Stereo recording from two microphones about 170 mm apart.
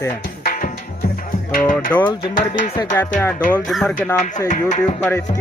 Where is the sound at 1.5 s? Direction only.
50° left (ahead or behind).